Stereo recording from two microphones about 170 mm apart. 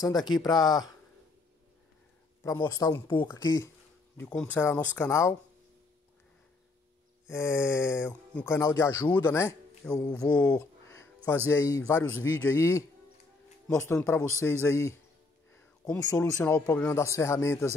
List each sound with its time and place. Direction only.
0.2 s speech: 25° left (ahead or behind)
2.4 s speech: 20° left (ahead or behind)
4.2 s speech: 10° left (ahead or behind)
7.2 s speech: 15° left (ahead or behind)
16.1 s speech: 20° left (ahead or behind)
16.7 s speech: 5° left (ahead or behind)
17.0 s speech: 15° left (ahead or behind)